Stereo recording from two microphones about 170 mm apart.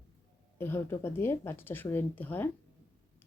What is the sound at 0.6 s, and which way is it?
A woman's voice, 15° left (ahead or behind).